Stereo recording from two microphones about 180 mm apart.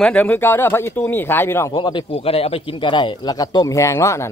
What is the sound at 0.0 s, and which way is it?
Speech, 10° left (ahead or behind).